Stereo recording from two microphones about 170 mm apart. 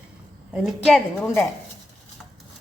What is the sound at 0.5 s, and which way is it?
Speech, centre (ahead or behind).